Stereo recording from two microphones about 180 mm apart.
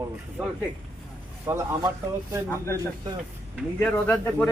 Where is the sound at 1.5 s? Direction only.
15° right (ahead or behind).